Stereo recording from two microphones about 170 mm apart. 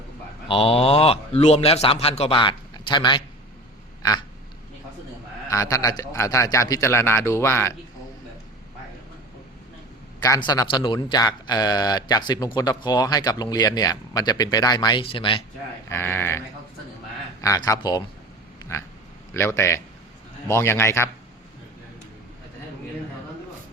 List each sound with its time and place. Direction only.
0.4 s a man's voice: 35° left (ahead or behind)
4.0 s a sound: 25° left (ahead or behind)
5.5 s a man's voice: 20° left (ahead or behind)
10.2 s a man's voice: 20° left (ahead or behind)
15.9 s a man's voice: 15° left (ahead or behind)
17.4 s a man's voice: 20° left (ahead or behind)
19.3 s a man's voice: 15° left (ahead or behind)